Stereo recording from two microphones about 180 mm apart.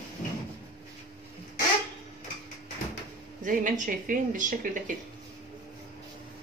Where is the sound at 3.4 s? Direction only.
50° right (ahead or behind).